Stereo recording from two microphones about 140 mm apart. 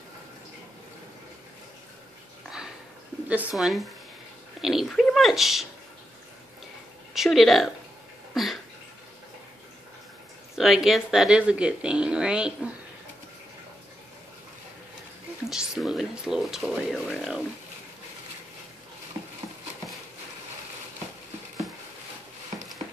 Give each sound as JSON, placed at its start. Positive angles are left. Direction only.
{"t": 3.3, "sound": "speech", "side_deg": -5}
{"t": 7.2, "sound": "speech", "side_deg": 0}
{"t": 10.5, "sound": "speech", "side_deg": 0}
{"t": 15.5, "sound": "a sound", "side_deg": -5}